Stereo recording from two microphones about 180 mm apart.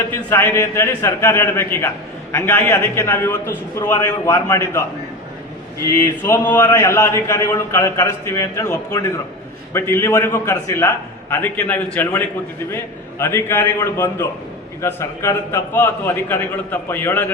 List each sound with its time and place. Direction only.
0.1 s a man's voice: 10° left (ahead or behind)
5.8 s a man's voice: 15° left (ahead or behind)